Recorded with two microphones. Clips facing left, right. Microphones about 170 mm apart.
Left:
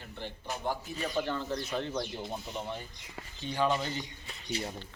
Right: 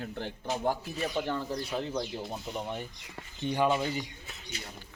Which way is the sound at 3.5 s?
10° right (ahead or behind).